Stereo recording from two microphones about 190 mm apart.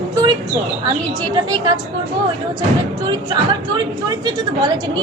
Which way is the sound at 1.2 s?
25° right (ahead or behind).